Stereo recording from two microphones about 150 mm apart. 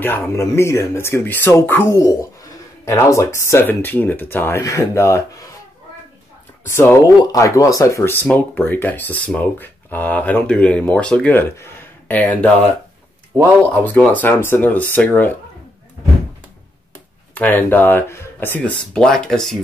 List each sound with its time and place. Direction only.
0.0 s speech: 15° left (ahead or behind)
6.7 s speech: 15° left (ahead or behind)
13.7 s speech: 10° left (ahead or behind)
17.3 s speech: 10° left (ahead or behind)